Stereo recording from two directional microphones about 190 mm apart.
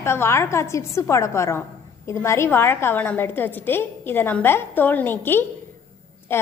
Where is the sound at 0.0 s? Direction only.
15° left (ahead or behind).